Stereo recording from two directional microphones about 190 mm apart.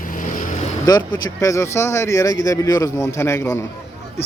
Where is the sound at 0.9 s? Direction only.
20° left (ahead or behind).